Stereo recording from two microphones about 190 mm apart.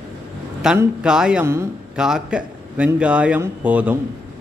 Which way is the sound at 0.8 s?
5° right (ahead or behind).